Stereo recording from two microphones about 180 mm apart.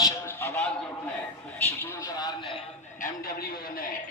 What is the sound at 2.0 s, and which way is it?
Speech, 20° left (ahead or behind).